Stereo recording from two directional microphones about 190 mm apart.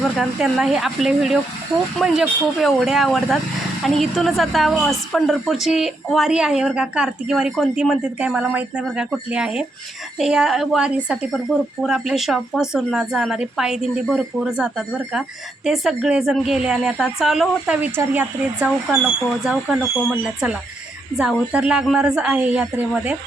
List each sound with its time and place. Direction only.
0.0 s a woman's voice: centre (ahead or behind)